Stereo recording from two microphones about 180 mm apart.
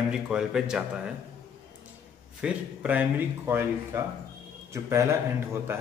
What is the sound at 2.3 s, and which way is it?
Speech, 5° right (ahead or behind).